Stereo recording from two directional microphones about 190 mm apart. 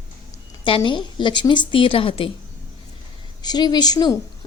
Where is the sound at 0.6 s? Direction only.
25° left (ahead or behind).